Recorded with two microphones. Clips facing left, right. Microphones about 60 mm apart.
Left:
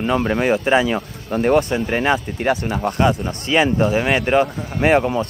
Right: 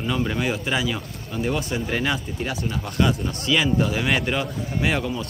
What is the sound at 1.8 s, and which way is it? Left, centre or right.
Speech, left.